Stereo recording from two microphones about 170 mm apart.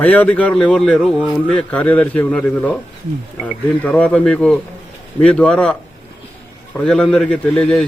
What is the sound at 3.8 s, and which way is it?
A man's voice, 10° left (ahead or behind).